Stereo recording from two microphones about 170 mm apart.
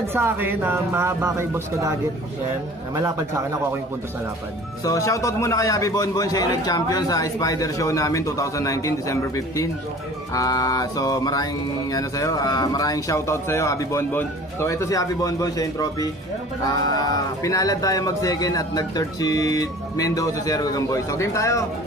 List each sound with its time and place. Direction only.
0.1 s a man's voice: 15° right (ahead or behind)
4.8 s speech: 20° left (ahead or behind)